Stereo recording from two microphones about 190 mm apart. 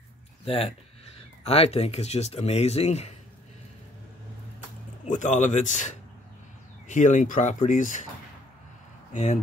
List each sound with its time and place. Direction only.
1.4 s speech: 30° left (ahead or behind)
5.0 s speech: 40° left (ahead or behind)
9.1 s speech: 35° left (ahead or behind)